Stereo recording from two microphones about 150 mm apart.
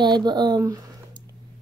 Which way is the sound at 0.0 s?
30° right (ahead or behind).